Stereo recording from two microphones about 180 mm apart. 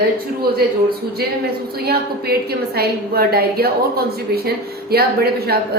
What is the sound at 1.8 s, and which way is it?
A woman's voice, 60° right (ahead or behind).